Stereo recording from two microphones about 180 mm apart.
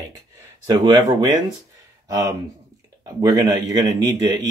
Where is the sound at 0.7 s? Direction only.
20° right (ahead or behind).